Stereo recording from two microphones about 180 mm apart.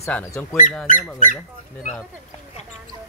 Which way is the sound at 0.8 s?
45° left (ahead or behind).